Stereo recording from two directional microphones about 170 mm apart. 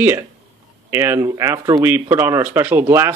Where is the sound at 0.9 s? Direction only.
15° right (ahead or behind).